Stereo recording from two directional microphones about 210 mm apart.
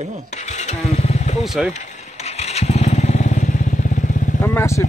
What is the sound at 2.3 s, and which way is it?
Motorcycle, 30° left (ahead or behind).